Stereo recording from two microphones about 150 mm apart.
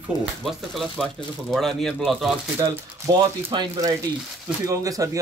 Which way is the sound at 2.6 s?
25° right (ahead or behind).